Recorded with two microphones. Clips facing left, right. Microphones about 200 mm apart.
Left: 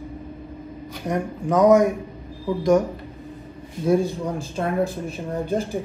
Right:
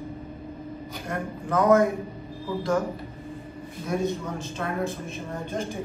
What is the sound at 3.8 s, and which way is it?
A man's voice, 30° left (ahead or behind).